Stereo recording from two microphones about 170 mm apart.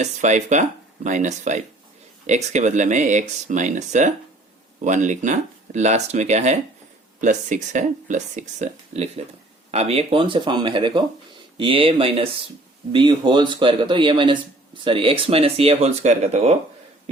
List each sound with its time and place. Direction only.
0.0 s speech: 45° right (ahead or behind)